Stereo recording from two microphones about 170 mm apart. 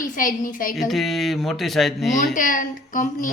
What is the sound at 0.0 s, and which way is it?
Speech, 50° left (ahead or behind).